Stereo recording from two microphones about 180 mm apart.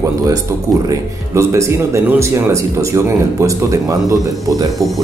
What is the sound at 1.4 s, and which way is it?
Speech, 15° right (ahead or behind).